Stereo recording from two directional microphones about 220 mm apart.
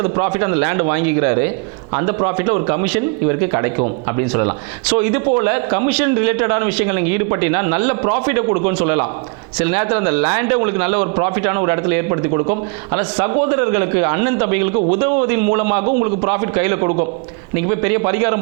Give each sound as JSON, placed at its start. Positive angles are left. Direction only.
{"t": 0.0, "sound": "a man's voice", "side_deg": -20}
{"t": 4.9, "sound": "a man's voice", "side_deg": -20}
{"t": 15.6, "sound": "a man's voice", "side_deg": -25}